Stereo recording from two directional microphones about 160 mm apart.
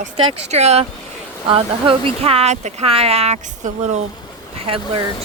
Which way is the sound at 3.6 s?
50° right (ahead or behind).